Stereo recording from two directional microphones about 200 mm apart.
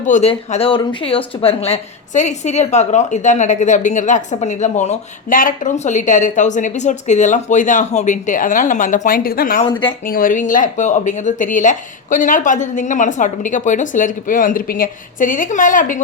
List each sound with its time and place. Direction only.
0.0 s speech: 35° left (ahead or behind)
9.6 s speech: 25° left (ahead or behind)
10.1 s speech: 45° left (ahead or behind)